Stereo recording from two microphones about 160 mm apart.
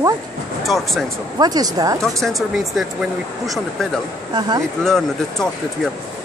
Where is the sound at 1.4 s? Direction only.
25° right (ahead or behind).